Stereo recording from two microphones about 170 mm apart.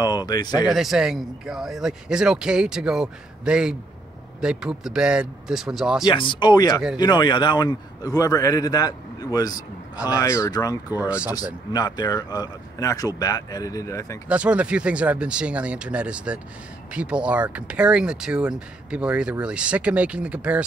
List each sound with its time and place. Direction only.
0.3 s a man's voice: 25° left (ahead or behind)
0.7 s speech: centre (ahead or behind)
6.0 s a man's voice: 25° left (ahead or behind)
11.0 s speech: 10° right (ahead or behind)
11.7 s a man's voice: 25° left (ahead or behind)
14.3 s speech: 5° right (ahead or behind)